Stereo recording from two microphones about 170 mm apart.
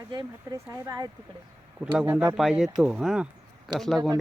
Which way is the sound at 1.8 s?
5° right (ahead or behind).